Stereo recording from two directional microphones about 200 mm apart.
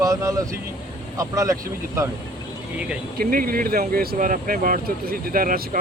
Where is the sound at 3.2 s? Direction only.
45° right (ahead or behind).